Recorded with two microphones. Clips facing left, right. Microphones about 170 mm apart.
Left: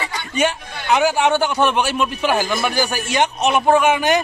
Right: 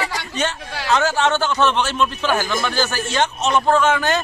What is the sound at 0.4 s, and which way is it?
A man's voice, 15° left (ahead or behind).